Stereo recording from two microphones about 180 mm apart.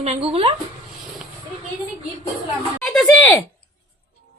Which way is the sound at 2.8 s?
Centre (ahead or behind).